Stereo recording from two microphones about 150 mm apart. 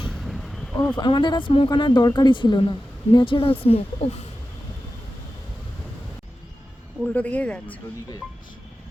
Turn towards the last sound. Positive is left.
turn(degrees=10)  # may be behind; listen again after turning